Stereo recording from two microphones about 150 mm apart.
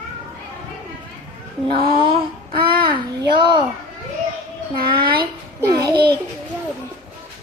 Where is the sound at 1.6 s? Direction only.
35° right (ahead or behind).